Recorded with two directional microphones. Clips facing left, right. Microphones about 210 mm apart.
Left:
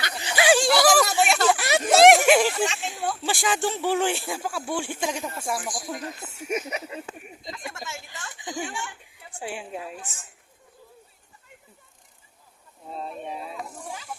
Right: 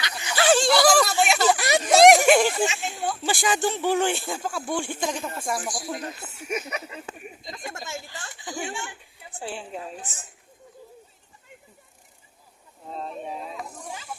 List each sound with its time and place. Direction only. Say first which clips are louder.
0.3 s a sound: even; 10° left (ahead or behind)
2.6 s speech: right 1 dB; 5° right (ahead or behind)
6.5 s speech: left 2 dB; 20° left (ahead or behind)
7.5 s a sound: right 2 dB; 40° right (ahead or behind)
8.4 s speech: left 2 dB; 20° left (ahead or behind)
8.6 s speech: right 1 dB; 25° right (ahead or behind)
9.4 s a woman's voice: even; 10° left (ahead or behind)
9.8 s a woman's voice: even; 35° right (ahead or behind)
12.8 s speech: right 1 dB; 5° left (ahead or behind)